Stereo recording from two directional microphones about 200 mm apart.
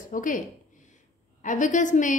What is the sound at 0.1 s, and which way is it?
Speech, 40° left (ahead or behind).